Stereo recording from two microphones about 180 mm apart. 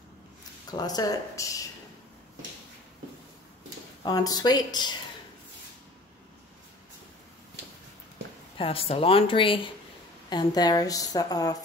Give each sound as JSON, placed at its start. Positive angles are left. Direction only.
{"t": 0.7, "sound": "a woman's voice", "side_deg": 20}
{"t": 4.0, "sound": "a woman's voice", "side_deg": 20}
{"t": 8.5, "sound": "a woman's voice", "side_deg": 30}